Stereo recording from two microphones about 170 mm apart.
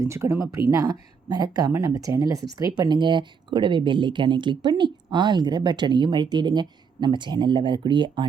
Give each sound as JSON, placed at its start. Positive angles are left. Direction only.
{"t": 0.0, "sound": "speech", "side_deg": -15}